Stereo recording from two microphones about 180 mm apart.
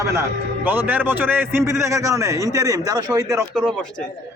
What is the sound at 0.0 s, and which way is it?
A man's voice, 15° right (ahead or behind).